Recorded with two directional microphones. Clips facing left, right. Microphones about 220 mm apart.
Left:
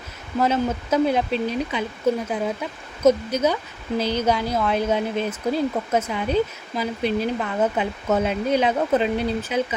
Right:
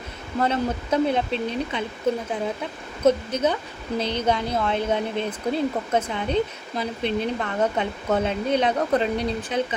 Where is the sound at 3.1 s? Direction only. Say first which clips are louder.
Left 2 dB; 10° left (ahead or behind).